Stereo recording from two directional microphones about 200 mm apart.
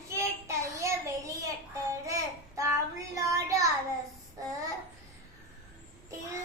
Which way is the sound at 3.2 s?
15° right (ahead or behind).